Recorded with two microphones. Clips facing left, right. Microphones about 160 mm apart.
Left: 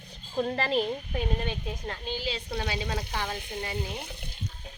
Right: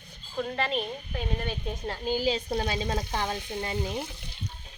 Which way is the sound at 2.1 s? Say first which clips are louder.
Right 7 dB; 45° right (ahead or behind).